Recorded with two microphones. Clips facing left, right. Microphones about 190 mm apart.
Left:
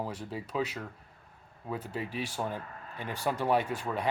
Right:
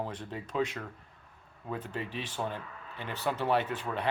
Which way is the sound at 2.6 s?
45° left (ahead or behind).